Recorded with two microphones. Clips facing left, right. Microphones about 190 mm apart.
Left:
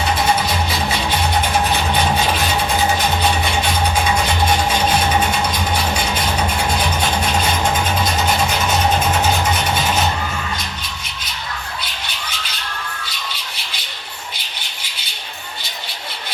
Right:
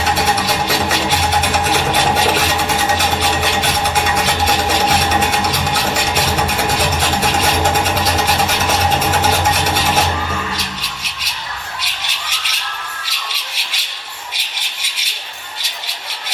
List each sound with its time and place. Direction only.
0.2 s music: 90° right
9.5 s rub: 90° right
10.6 s music: 90° right
11.8 s a sound: 90° right